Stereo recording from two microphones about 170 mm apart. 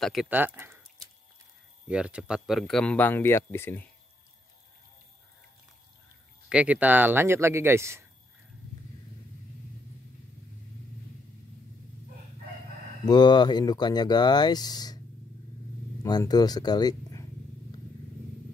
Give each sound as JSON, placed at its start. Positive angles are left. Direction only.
{"t": 0.0, "sound": "speech", "side_deg": 0}
{"t": 0.3, "sound": "speech", "side_deg": -10}
{"t": 1.9, "sound": "speech", "side_deg": -5}
{"t": 6.5, "sound": "speech", "side_deg": -5}
{"t": 13.0, "sound": "speech", "side_deg": 25}
{"t": 16.0, "sound": "speech", "side_deg": 25}